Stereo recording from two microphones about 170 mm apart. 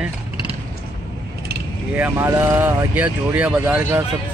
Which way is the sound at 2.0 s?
15° right (ahead or behind).